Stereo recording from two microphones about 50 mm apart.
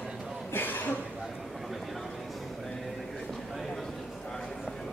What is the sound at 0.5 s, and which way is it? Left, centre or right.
Cough, left.